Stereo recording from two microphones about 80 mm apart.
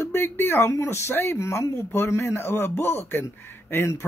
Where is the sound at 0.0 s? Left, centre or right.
Left.